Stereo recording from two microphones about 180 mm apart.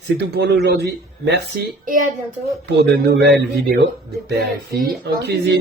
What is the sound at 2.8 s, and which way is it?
Speech, 65° right (ahead or behind).